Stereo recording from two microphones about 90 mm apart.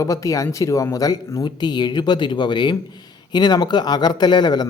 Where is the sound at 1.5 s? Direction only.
50° left (ahead or behind).